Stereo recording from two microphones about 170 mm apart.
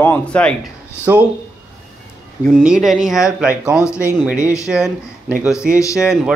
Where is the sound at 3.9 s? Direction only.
15° left (ahead or behind).